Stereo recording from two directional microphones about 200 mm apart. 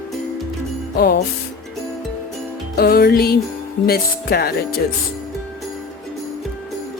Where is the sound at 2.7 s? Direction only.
50° left (ahead or behind).